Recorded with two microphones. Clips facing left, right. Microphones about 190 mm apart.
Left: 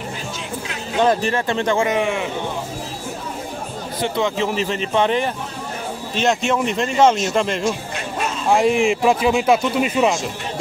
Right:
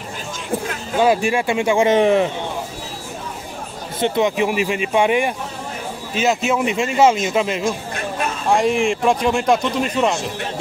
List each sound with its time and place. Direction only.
0.9 s speech: 10° right (ahead or behind)
1.9 s a man's voice: 35° right (ahead or behind)
4.0 s speech: 20° right (ahead or behind); by 10.1 s 5° left (ahead or behind)